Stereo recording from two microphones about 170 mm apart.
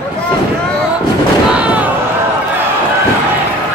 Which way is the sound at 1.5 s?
10° right (ahead or behind).